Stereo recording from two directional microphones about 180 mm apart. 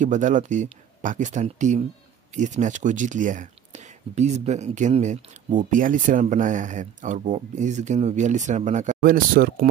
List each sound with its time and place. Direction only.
0.0 s speech: 45° right (ahead or behind)